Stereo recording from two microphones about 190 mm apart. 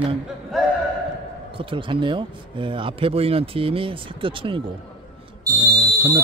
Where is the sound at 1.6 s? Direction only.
25° right (ahead or behind).